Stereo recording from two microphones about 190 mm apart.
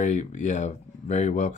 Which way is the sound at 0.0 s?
40° left (ahead or behind).